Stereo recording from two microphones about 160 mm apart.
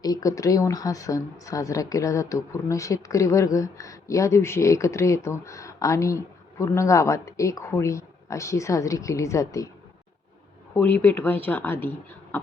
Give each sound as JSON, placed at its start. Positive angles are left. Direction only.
{"t": 0.0, "sound": "speech", "side_deg": 20}
{"t": 10.8, "sound": "speech", "side_deg": 10}